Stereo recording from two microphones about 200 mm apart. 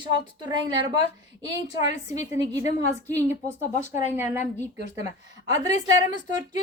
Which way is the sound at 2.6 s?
35° left (ahead or behind).